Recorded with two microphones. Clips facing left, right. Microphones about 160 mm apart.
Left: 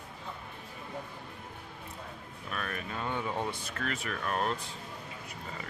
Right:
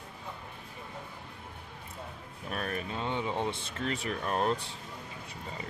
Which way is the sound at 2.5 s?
35° right (ahead or behind).